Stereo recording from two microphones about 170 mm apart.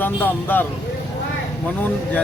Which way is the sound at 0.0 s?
10° left (ahead or behind).